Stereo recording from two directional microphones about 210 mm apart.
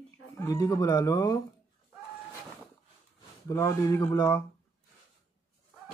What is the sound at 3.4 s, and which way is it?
Speech, 15° left (ahead or behind).